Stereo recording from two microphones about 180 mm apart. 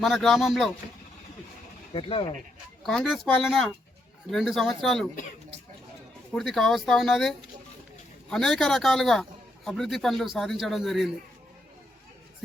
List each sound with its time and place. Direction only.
0.0 s a man's voice: centre (ahead or behind)
1.9 s speech: 30° left (ahead or behind)
2.8 s a man's voice: centre (ahead or behind)
6.3 s a man's voice: centre (ahead or behind)